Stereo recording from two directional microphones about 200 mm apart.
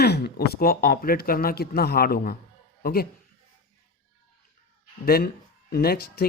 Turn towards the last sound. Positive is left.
turn(degrees=50)  # may be behind; listen again after turning